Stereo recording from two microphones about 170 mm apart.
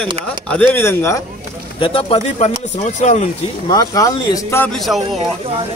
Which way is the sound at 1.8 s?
35° left (ahead or behind).